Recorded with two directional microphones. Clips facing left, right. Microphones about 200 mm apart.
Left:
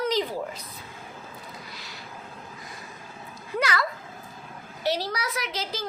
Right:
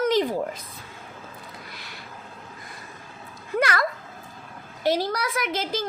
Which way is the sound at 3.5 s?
50° right (ahead or behind).